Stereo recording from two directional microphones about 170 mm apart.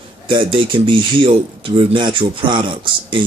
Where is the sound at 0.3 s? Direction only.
30° right (ahead or behind).